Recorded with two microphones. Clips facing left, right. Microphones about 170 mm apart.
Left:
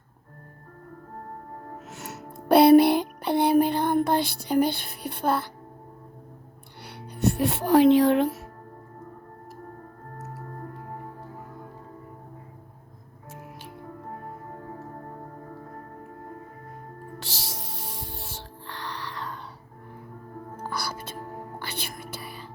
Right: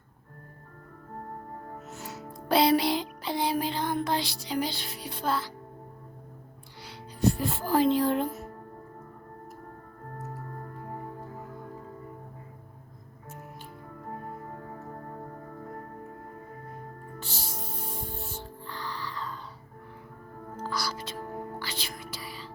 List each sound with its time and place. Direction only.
2.0 s music: 65° left (ahead or behind)
6.8 s speech: 65° left (ahead or behind); by 8.3 s 80° left
17.2 s music: 90° left
18.6 s music: 70° left (ahead or behind)
20.6 s music: 55° left (ahead or behind)